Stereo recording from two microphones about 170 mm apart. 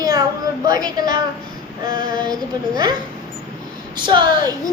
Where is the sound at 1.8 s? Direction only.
25° right (ahead or behind).